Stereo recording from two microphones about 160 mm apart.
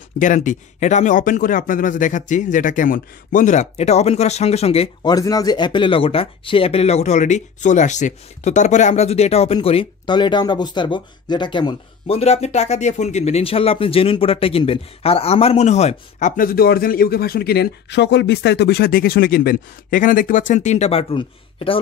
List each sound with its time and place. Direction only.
0.2 s speech: 50° left (ahead or behind)
5.0 s speech: 25° left (ahead or behind)
12.2 s speech: 40° left (ahead or behind)